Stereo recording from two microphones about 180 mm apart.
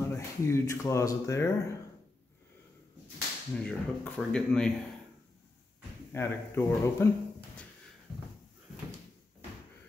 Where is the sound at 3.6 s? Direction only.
5° left (ahead or behind).